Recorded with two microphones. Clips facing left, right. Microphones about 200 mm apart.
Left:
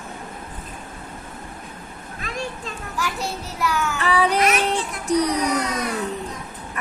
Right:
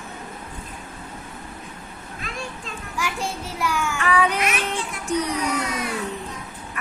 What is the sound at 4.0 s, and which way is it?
Speech, 35° left (ahead or behind).